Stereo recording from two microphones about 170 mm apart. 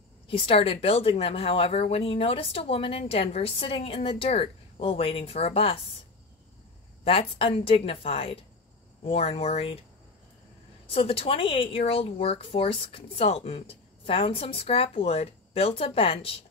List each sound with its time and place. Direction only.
0.3 s speech: 30° left (ahead or behind)
7.1 s speech: 30° left (ahead or behind)
10.9 s speech: 35° left (ahead or behind)